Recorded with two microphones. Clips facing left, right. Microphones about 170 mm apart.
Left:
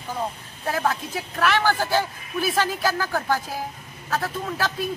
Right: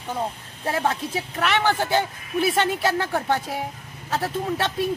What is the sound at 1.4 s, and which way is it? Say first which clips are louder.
A man's voice: left 1 dB; 20° right (ahead or behind).